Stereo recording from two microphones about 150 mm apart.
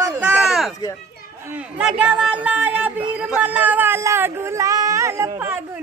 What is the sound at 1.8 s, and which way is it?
Speech, 5° right (ahead or behind).